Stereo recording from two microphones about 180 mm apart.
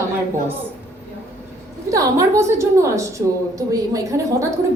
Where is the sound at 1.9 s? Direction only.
20° right (ahead or behind).